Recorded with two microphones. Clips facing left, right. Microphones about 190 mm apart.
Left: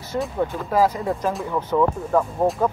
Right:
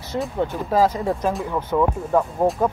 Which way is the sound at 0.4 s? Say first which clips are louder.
Right 1 dB; 20° right (ahead or behind).